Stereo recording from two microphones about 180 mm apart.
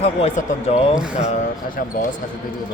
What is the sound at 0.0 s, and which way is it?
Speech, 35° left (ahead or behind).